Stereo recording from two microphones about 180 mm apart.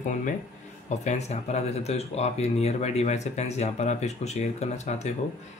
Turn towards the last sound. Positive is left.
turn(degrees=40)  # may be behind; listen again after turning